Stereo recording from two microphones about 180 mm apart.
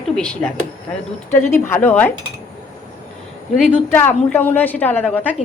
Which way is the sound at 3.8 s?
10° left (ahead or behind).